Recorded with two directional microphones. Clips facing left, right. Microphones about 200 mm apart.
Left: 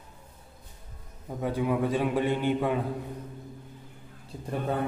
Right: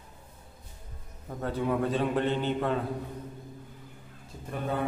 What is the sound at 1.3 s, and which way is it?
A man's voice, 10° left (ahead or behind).